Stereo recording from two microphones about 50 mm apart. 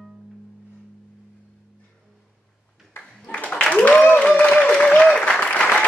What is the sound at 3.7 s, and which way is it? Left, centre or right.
Applause, left.